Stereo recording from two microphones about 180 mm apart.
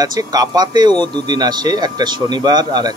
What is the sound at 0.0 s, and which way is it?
Speech, 20° right (ahead or behind).